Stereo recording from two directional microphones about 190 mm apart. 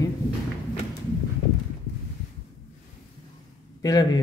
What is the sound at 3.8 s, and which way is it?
Speech, 20° left (ahead or behind).